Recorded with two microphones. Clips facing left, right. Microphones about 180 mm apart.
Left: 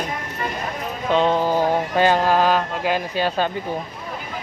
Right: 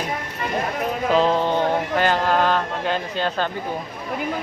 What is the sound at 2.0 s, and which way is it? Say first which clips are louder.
Speech: left 4 dB; 15° left (ahead or behind).